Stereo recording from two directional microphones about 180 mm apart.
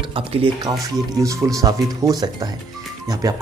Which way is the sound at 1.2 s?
20° right (ahead or behind).